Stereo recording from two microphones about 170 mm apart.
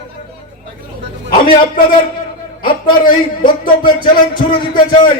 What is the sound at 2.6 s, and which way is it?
Speech, 30° left (ahead or behind).